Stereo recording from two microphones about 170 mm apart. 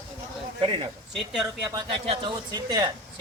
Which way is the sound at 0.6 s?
30° right (ahead or behind).